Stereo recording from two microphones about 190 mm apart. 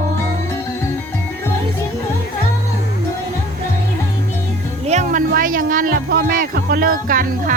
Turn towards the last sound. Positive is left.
turn(degrees=-50)  # may be behind; listen again after turning